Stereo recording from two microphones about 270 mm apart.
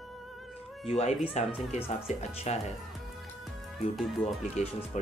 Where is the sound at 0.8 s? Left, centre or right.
Left.